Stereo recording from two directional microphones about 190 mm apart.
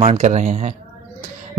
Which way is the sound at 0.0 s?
35° right (ahead or behind).